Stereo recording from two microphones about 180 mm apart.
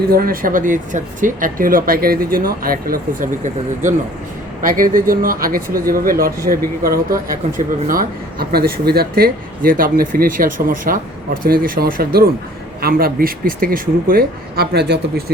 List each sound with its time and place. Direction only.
0.1 s a man's voice: 55° right (ahead or behind)